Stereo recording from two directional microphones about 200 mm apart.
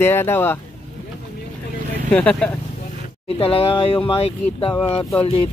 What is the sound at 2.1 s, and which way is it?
Speech, 5° left (ahead or behind).